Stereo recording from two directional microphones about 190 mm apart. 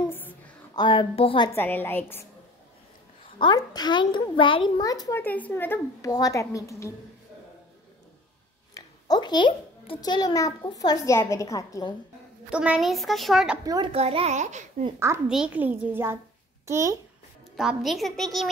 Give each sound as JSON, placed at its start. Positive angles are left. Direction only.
{"t": 0.7, "sound": "a child's voice", "side_deg": 25}
{"t": 1.5, "sound": "a woman's voice", "side_deg": 10}
{"t": 3.3, "sound": "a child's voice", "side_deg": 25}
{"t": 8.7, "sound": "a child's voice", "side_deg": 20}
{"t": 12.4, "sound": "a woman's voice", "side_deg": -5}
{"t": 13.9, "sound": "a child's voice", "side_deg": -35}
{"t": 15.0, "sound": "a child's voice", "side_deg": -15}
{"t": 17.6, "sound": "a woman's voice", "side_deg": 0}